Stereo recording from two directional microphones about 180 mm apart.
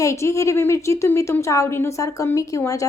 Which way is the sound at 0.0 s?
15° left (ahead or behind).